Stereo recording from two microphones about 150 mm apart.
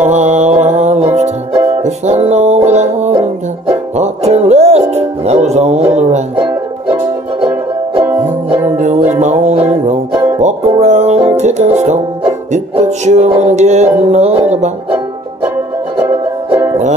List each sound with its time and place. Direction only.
0.0 s music: 50° right (ahead or behind)
1.5 s music: 20° right (ahead or behind)
1.8 s music: 50° right (ahead or behind)
9.1 s music: 50° right (ahead or behind)
16.4 s music: 15° right (ahead or behind)